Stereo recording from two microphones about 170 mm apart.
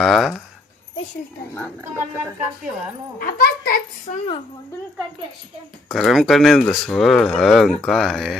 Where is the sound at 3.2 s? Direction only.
55° left (ahead or behind).